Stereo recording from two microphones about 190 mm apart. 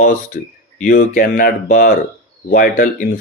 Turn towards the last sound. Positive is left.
turn(degrees=45)  # may be behind; listen again after turning